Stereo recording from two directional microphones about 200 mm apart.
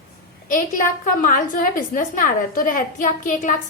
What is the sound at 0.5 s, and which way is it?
A woman's voice, 40° left (ahead or behind).